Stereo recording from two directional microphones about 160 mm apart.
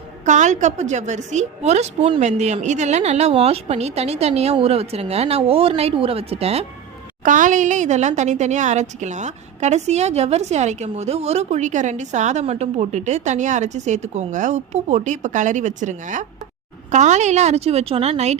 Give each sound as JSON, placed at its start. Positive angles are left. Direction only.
{"t": 0.3, "sound": "a woman's voice", "side_deg": -50}
{"t": 7.3, "sound": "a woman's voice", "side_deg": -55}